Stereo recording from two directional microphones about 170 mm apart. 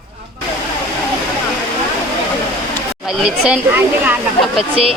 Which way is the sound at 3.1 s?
5° right (ahead or behind).